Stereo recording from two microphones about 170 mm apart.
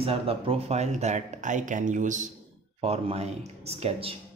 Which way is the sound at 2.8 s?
35° right (ahead or behind).